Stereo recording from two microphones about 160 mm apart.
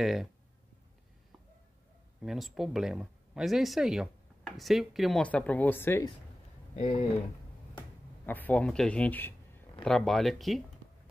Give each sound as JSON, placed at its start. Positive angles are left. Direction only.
{"t": 0.0, "sound": "speech", "side_deg": 0}
{"t": 2.2, "sound": "speech", "side_deg": 0}
{"t": 6.7, "sound": "speech", "side_deg": 40}
{"t": 8.3, "sound": "a man's voice", "side_deg": 10}